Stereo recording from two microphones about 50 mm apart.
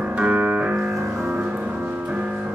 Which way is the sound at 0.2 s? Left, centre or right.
Right.